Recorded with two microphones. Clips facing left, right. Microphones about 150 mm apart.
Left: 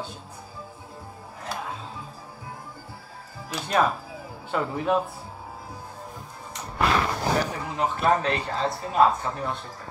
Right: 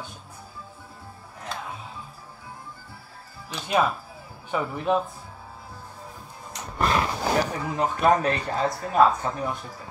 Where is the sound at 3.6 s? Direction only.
5° right (ahead or behind).